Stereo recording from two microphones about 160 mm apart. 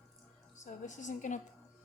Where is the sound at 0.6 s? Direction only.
50° left (ahead or behind).